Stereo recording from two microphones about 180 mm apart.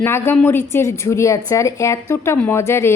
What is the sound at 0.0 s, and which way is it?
A woman's voice, 10° left (ahead or behind).